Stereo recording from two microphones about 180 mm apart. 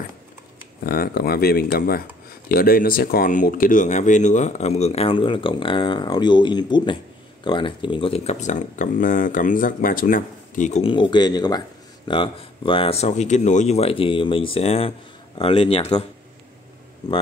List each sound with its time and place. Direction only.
0.8 s speech: 55° left (ahead or behind); by 16.1 s 35° left (ahead or behind)